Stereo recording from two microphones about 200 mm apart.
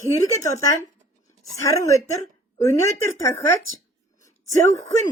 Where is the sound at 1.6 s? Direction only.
15° left (ahead or behind).